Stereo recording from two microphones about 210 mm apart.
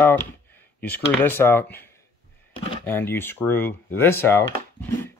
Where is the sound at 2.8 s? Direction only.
10° left (ahead or behind).